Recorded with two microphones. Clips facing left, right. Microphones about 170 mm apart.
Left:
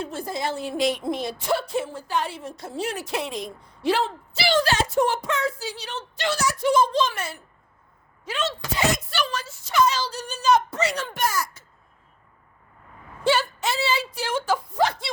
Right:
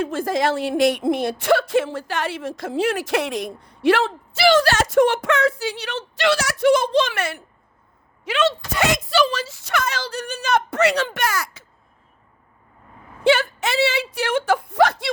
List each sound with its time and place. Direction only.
0.0 s a woman's voice: 90° right; by 11.6 s 75° right (ahead or behind)
13.2 s speech: 55° right (ahead or behind)